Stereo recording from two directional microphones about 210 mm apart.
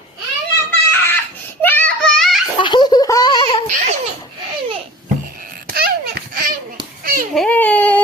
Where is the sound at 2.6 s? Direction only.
20° left (ahead or behind).